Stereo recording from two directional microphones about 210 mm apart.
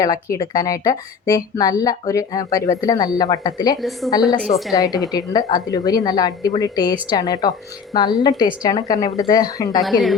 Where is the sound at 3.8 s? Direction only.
Centre (ahead or behind).